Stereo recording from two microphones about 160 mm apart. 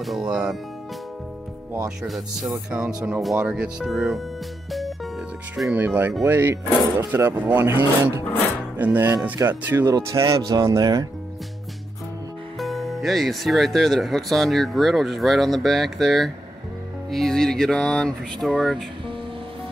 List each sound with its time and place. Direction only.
0.0 s speech: centre (ahead or behind)
2.0 s speech: centre (ahead or behind)
5.6 s speech: 10° right (ahead or behind)
12.5 s speech: centre (ahead or behind)